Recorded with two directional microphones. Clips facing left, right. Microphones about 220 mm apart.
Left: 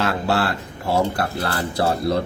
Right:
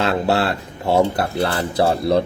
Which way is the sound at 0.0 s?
20° right (ahead or behind).